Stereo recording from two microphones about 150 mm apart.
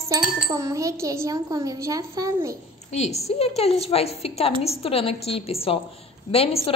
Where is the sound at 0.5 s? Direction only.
20° right (ahead or behind).